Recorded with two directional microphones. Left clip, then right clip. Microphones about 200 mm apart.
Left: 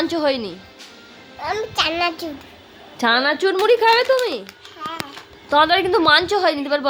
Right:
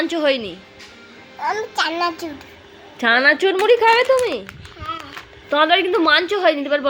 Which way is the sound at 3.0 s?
Centre (ahead or behind).